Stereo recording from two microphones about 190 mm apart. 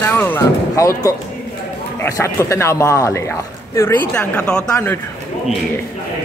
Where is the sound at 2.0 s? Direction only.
15° left (ahead or behind).